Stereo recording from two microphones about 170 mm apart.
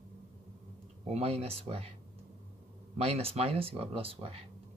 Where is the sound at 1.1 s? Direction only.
35° right (ahead or behind).